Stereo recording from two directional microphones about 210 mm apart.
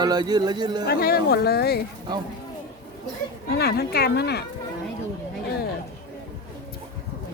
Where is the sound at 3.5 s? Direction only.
50° left (ahead or behind).